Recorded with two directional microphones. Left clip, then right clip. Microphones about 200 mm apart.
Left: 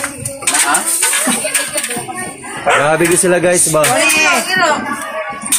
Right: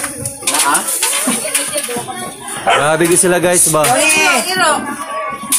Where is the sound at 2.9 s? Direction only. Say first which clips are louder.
Even; 5° left (ahead or behind).